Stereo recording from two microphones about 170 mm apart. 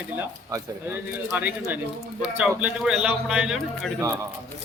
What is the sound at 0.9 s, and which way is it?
A man's voice, 15° right (ahead or behind).